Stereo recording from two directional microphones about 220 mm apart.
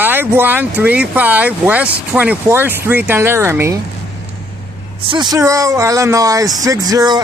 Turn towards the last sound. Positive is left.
turn(degrees=-20)  # may be behind; listen again after turning